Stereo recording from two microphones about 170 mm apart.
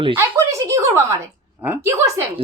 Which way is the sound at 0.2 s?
20° right (ahead or behind).